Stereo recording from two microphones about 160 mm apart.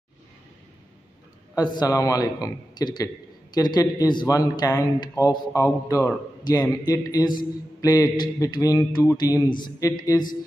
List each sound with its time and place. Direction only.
1.8 s a man's voice: 20° left (ahead or behind)